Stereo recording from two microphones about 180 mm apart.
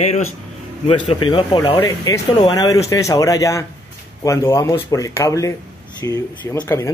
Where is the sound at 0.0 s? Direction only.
40° left (ahead or behind).